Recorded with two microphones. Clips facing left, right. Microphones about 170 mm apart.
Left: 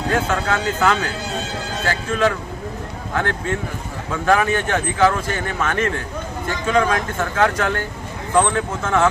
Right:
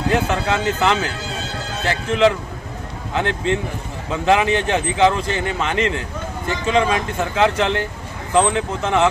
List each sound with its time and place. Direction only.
0.1 s speech: 15° right (ahead or behind)